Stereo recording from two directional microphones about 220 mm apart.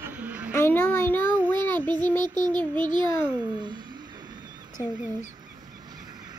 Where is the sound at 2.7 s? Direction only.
20° right (ahead or behind).